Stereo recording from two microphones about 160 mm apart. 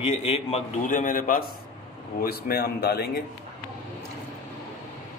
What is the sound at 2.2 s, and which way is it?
Speech, 75° left (ahead or behind).